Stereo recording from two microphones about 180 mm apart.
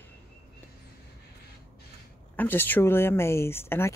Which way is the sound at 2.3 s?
10° left (ahead or behind).